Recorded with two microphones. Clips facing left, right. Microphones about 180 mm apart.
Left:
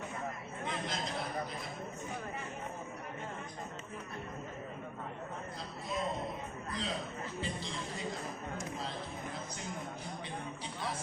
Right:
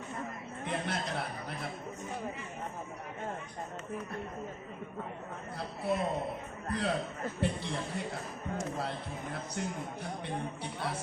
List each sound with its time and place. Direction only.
0.6 s a sound: 65° right (ahead or behind)
5.5 s speech: 65° right (ahead or behind)
8.8 s music: 65° right (ahead or behind)